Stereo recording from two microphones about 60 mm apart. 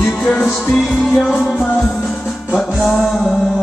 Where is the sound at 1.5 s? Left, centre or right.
Centre.